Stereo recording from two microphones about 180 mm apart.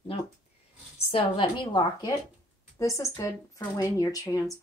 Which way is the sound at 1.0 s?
30° left (ahead or behind).